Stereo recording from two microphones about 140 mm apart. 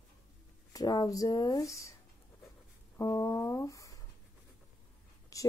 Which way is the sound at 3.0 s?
25° left (ahead or behind).